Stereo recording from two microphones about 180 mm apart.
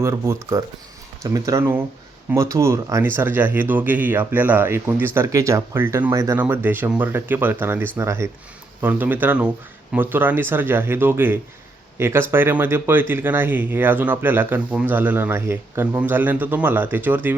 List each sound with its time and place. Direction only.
0.0 s speech: 15° right (ahead or behind)